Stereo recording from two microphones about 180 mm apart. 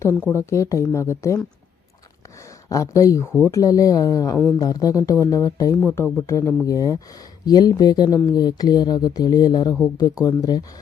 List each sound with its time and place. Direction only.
0.3 s speech: 15° left (ahead or behind)
2.6 s speech: 15° left (ahead or behind)